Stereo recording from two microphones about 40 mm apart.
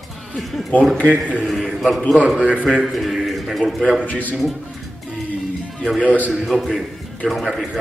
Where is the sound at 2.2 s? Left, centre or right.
Right.